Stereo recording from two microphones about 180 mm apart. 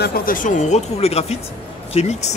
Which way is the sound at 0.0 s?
55° left (ahead or behind).